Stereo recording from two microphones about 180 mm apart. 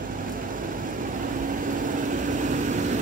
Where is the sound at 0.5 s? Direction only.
50° right (ahead or behind).